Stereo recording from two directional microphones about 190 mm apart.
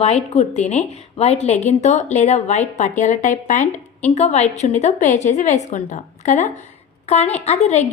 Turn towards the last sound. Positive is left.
turn(degrees=35)  # may be behind; listen again after turning